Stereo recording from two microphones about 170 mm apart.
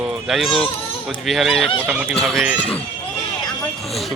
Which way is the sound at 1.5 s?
35° left (ahead or behind).